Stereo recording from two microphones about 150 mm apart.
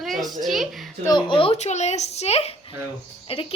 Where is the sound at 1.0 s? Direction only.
30° left (ahead or behind).